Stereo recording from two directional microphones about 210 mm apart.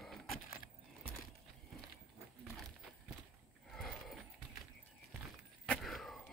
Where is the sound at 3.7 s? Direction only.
Centre (ahead or behind).